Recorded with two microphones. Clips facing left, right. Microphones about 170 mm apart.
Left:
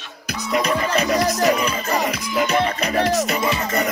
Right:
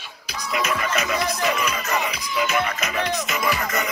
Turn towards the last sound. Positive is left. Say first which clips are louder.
# left 6 dB
turn(degrees=40)  # may be behind; listen again after turning